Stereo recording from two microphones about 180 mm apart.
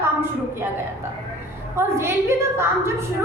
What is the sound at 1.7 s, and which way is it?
A woman's voice, 15° right (ahead or behind).